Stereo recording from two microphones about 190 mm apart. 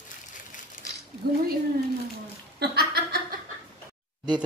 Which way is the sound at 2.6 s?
55° right (ahead or behind).